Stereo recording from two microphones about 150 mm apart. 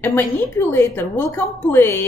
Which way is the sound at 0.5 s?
15° left (ahead or behind).